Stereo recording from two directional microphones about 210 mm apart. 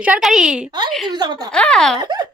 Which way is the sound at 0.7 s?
20° right (ahead or behind).